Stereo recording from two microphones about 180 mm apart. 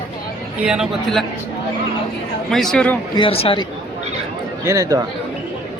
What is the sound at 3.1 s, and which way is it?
Speech, 30° left (ahead or behind).